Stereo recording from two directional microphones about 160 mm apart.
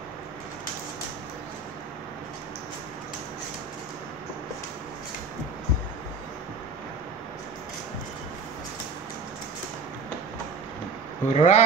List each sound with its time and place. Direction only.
11.3 s speech: 45° left (ahead or behind)